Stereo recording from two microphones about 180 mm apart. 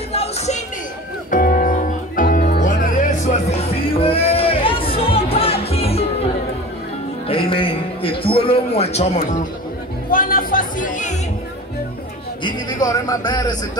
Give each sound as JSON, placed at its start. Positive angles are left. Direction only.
{"t": 0.1, "sound": "music", "side_deg": 35}
{"t": 1.3, "sound": "music", "side_deg": 50}
{"t": 7.2, "sound": "a sound", "side_deg": 30}
{"t": 9.2, "sound": "a man's voice", "side_deg": 45}
{"t": 12.4, "sound": "speech", "side_deg": 20}